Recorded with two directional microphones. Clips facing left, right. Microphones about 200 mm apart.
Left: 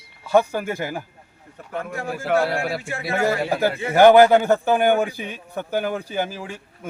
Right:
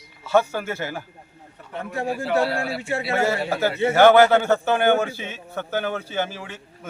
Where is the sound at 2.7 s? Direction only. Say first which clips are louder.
Right 3 dB; 30° right (ahead or behind).